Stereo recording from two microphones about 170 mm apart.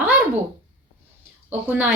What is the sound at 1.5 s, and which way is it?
Speech, 10° right (ahead or behind).